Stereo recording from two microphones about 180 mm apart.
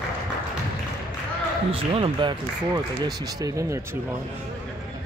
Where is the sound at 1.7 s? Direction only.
30° right (ahead or behind).